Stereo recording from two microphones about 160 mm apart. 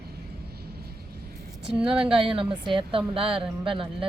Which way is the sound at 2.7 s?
35° right (ahead or behind).